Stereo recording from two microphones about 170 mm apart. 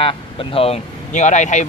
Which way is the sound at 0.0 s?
30° left (ahead or behind).